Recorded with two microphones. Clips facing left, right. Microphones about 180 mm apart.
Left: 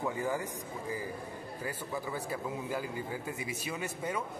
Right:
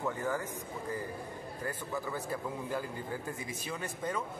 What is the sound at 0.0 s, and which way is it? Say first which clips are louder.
Speech: left 1 dB; 10° left (ahead or behind).